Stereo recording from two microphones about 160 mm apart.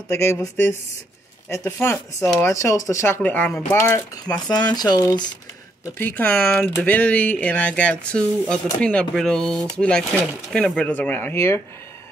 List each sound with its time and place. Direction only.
0.1 s speech: 15° left (ahead or behind)
5.9 s speech: 10° left (ahead or behind)